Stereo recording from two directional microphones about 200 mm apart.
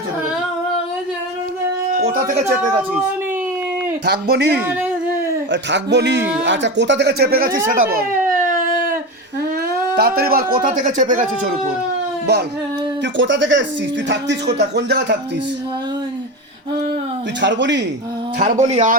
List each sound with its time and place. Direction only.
2.1 s speech: 40° right (ahead or behind)
4.0 s speech: 55° right (ahead or behind)
8.4 s a sound: 40° right (ahead or behind)
9.9 s speech: 50° right (ahead or behind)
13.1 s speech: 65° right (ahead or behind)
17.4 s speech: 60° right (ahead or behind)
18.3 s speech: 40° right (ahead or behind)